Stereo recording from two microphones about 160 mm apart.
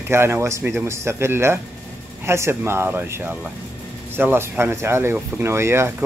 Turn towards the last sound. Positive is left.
turn(degrees=-15)  # may be behind; listen again after turning